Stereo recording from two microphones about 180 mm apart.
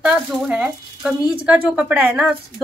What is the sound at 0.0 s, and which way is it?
A woman's voice, 5° right (ahead or behind).